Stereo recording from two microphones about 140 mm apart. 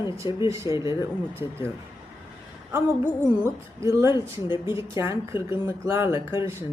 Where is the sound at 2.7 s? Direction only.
15° right (ahead or behind).